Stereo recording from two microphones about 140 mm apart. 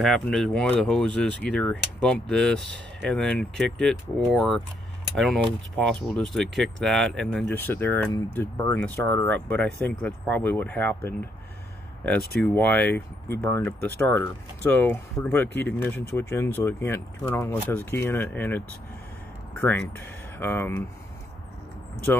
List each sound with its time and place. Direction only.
0.0 s speech: 5° left (ahead or behind)
5.1 s speech: centre (ahead or behind)
12.4 s speech: 10° left (ahead or behind)